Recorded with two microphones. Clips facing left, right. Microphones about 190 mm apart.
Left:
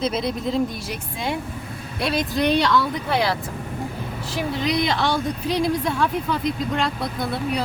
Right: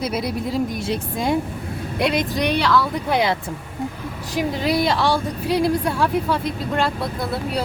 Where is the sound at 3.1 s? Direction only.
15° right (ahead or behind).